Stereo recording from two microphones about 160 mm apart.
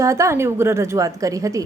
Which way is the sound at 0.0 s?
20° right (ahead or behind).